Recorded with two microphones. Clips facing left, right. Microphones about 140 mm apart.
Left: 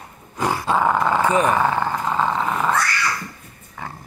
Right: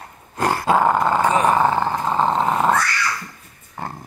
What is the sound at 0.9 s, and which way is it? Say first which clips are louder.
Dog: right 1 dB; 30° right (ahead or behind).